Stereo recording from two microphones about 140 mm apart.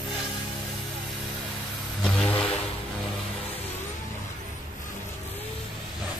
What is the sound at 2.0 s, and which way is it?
Vehicle, 5° left (ahead or behind).